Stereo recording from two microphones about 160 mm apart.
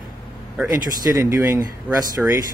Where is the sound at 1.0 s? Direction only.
20° right (ahead or behind).